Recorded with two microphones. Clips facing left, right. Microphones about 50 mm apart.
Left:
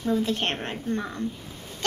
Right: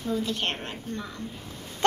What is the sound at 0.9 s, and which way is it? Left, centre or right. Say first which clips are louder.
Speech: left 8 dB; left.